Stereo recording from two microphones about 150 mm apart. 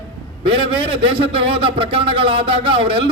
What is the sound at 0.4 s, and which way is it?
A man's voice, 35° right (ahead or behind).